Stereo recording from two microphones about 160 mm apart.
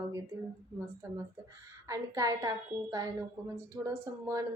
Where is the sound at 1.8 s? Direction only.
20° right (ahead or behind).